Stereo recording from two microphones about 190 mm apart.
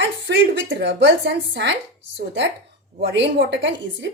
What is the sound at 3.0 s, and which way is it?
A woman's voice, 60° right (ahead or behind).